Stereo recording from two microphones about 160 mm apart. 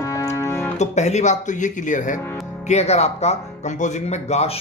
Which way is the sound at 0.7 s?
45° left (ahead or behind).